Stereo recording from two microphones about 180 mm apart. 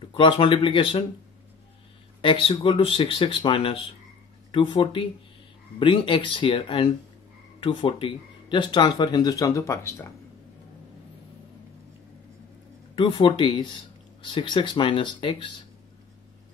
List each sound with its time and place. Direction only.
0.1 s speech: 25° left (ahead or behind)
2.2 s speech: 30° left (ahead or behind)
12.9 s speech: 30° left (ahead or behind)